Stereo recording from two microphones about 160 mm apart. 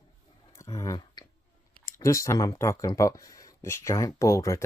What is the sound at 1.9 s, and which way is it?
Speech, 20° left (ahead or behind).